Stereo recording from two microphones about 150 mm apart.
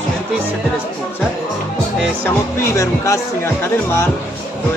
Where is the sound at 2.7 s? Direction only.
20° left (ahead or behind).